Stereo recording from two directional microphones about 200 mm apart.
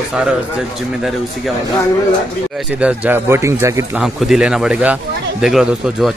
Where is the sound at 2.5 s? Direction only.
5° right (ahead or behind).